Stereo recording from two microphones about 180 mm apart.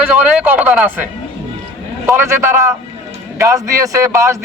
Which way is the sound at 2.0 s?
15° right (ahead or behind).